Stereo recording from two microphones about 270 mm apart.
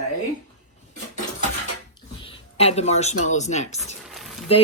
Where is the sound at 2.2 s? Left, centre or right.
Left.